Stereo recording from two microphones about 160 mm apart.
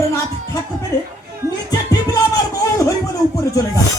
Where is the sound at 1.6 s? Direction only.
20° left (ahead or behind).